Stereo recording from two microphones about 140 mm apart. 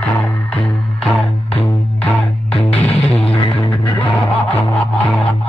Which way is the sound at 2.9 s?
45° left (ahead or behind).